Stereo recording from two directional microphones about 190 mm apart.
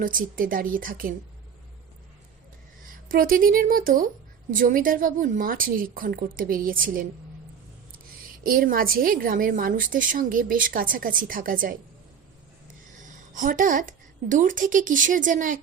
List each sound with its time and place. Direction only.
0.0 s a woman's voice: 45° right (ahead or behind)
3.1 s a woman's voice: 45° right (ahead or behind)
8.4 s a woman's voice: 50° right (ahead or behind)
13.3 s a woman's voice: 45° right (ahead or behind)